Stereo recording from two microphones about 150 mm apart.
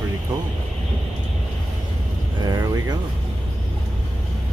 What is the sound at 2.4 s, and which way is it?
Vehicle, 25° right (ahead or behind).